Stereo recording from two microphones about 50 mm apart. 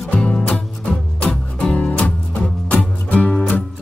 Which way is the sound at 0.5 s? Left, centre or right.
Left.